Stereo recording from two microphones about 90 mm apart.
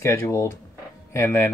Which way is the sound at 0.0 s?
30° left (ahead or behind).